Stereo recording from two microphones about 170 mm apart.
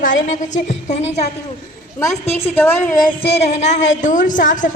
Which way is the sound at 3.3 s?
40° left (ahead or behind).